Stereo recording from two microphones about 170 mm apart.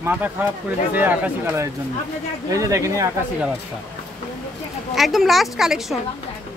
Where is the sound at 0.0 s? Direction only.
10° right (ahead or behind).